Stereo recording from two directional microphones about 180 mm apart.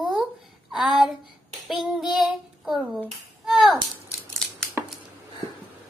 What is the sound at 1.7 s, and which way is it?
Child singing, centre (ahead or behind).